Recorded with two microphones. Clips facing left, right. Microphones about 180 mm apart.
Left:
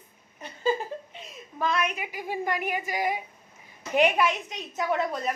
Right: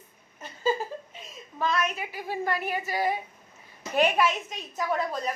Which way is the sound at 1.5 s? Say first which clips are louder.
Even; 15° left (ahead or behind).